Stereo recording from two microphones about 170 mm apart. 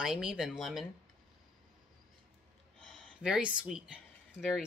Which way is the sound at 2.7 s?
5° left (ahead or behind).